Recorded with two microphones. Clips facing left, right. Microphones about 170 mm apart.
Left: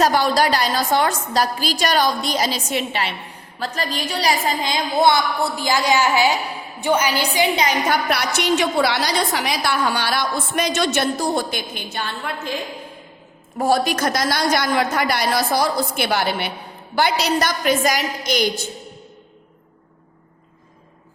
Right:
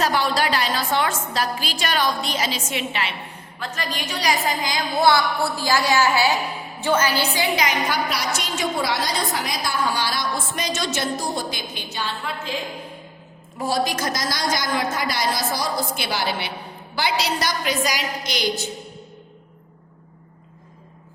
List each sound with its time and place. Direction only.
0.0 s a woman's voice: 40° left (ahead or behind); by 7.7 s 20° left (ahead or behind)
7.9 s a woman's voice: 60° left (ahead or behind)
13.6 s a woman's voice: 55° left (ahead or behind)